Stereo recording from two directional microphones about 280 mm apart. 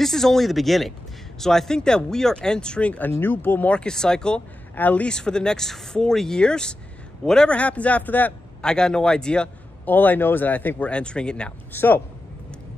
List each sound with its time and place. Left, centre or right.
0.0 s a man's voice: centre